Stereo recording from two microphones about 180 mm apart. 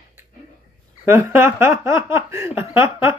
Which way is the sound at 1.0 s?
15° right (ahead or behind).